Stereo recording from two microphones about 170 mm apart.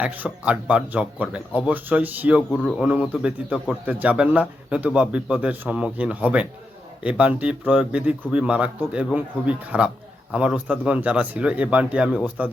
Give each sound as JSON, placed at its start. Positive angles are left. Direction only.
{"t": 0.0, "sound": "speech", "side_deg": -5}